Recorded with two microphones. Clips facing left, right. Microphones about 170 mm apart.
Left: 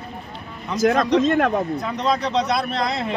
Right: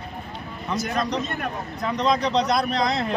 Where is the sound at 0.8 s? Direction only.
90° left.